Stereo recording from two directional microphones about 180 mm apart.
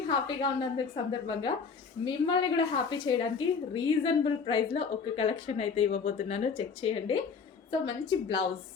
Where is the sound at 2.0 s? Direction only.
25° left (ahead or behind).